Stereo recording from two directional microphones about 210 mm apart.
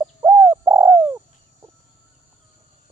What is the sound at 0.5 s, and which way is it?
Bird, 10° right (ahead or behind).